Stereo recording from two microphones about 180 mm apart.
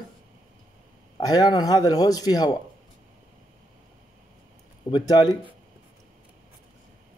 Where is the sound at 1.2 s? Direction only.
20° left (ahead or behind).